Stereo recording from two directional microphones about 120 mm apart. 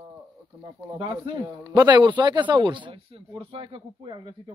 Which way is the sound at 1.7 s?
35° right (ahead or behind).